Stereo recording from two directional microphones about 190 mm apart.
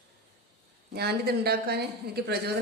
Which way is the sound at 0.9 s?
55° right (ahead or behind).